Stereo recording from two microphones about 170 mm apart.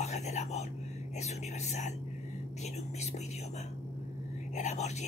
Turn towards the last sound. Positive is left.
turn(degrees=40)  # may be behind; listen again after turning